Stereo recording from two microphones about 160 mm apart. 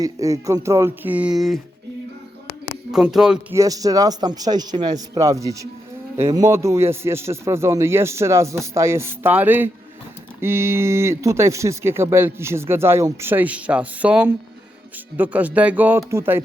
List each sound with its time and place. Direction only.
0.0 s speech: 20° right (ahead or behind); by 1.5 s centre (ahead or behind)
2.9 s speech: 5° right (ahead or behind)
3.5 s a man's voice: 20° right (ahead or behind)